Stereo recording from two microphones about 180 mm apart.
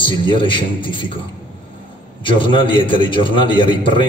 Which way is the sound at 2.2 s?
30° left (ahead or behind).